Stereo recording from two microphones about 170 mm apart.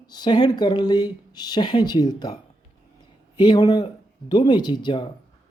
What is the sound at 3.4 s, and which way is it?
Speech, 25° left (ahead or behind).